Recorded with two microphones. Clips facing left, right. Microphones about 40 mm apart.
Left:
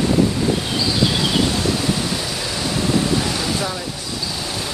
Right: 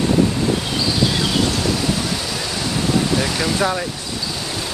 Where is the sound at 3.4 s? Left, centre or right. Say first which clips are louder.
Right 4 dB; right.